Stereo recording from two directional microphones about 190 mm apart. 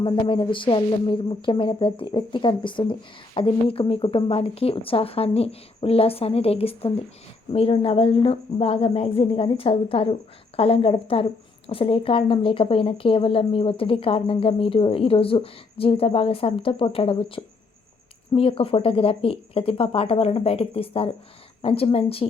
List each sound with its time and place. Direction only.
0.0 s speech: 25° left (ahead or behind)